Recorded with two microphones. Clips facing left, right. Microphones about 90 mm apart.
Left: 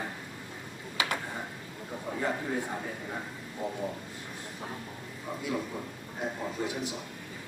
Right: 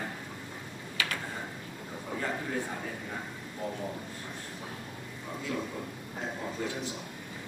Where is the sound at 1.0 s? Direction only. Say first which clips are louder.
Left 3 dB; 20° left (ahead or behind).